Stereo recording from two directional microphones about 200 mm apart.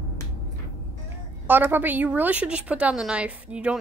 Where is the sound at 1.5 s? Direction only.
10° right (ahead or behind).